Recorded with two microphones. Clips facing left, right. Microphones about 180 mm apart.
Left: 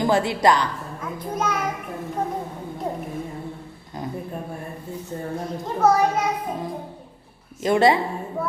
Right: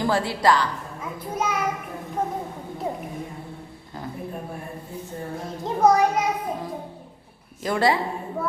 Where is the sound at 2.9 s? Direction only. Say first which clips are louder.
Left 1 dB; 5° right (ahead or behind).